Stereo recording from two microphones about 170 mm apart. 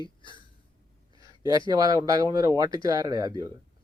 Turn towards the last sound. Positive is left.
turn(degrees=-20)  # may be behind; listen again after turning